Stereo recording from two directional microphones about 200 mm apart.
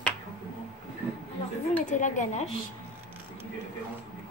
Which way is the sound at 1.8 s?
40° left (ahead or behind).